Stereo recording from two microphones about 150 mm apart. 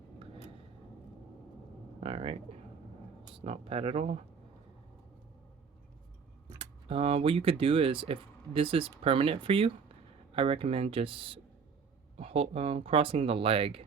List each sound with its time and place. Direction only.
2.0 s pigeon: 40° right (ahead or behind)
3.3 s speech: 40° right (ahead or behind)
6.6 s speech: 35° right (ahead or behind)